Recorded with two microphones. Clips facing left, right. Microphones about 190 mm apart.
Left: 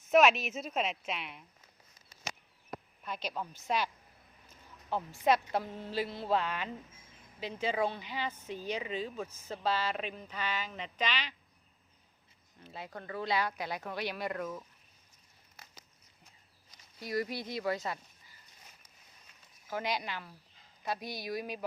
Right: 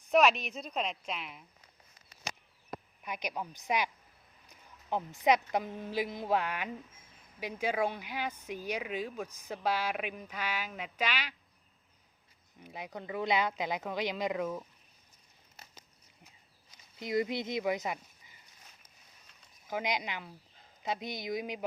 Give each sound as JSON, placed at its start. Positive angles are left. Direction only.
{"t": 0.0, "sound": "a woman's voice", "side_deg": 0}
{"t": 3.0, "sound": "a woman's voice", "side_deg": -15}
{"t": 12.5, "sound": "speech", "side_deg": -15}
{"t": 17.0, "sound": "speech", "side_deg": -20}
{"t": 19.6, "sound": "speech", "side_deg": -15}